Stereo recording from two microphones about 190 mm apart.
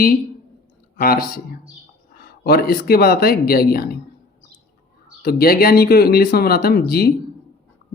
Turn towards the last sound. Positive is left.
turn(degrees=55)  # may be behind; listen again after turning